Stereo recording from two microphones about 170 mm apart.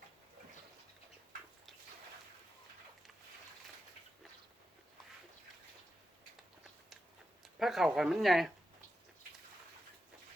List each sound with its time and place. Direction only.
7.6 s speech: centre (ahead or behind)